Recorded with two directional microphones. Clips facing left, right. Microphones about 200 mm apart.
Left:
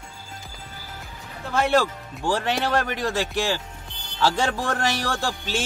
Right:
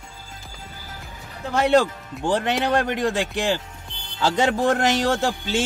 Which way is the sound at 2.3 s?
20° right (ahead or behind).